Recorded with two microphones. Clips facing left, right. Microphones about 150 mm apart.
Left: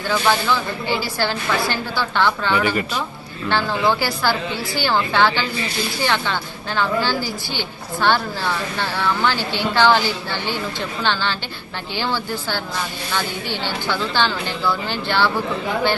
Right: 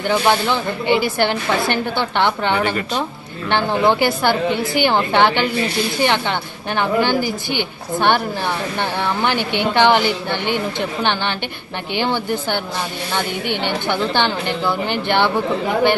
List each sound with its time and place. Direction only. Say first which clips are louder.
0.0 s a woman's voice: right 3 dB; 25° right (ahead or behind)